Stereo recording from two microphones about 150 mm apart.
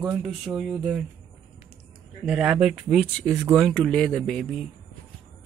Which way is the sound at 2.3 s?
5° right (ahead or behind).